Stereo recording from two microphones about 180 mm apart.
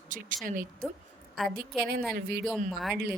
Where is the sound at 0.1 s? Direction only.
45° right (ahead or behind).